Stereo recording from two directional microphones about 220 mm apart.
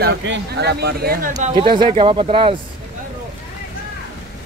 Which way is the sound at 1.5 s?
20° right (ahead or behind).